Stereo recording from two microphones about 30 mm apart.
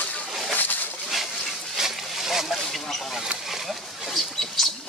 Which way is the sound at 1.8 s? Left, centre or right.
Centre.